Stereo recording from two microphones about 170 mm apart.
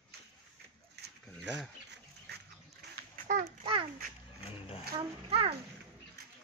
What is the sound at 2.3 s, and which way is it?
Dog, 75° right (ahead or behind).